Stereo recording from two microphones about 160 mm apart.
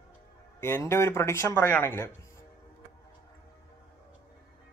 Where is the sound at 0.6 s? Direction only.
15° left (ahead or behind).